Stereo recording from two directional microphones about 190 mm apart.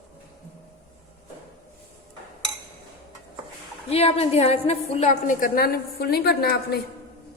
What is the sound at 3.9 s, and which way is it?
A woman's voice, 30° left (ahead or behind).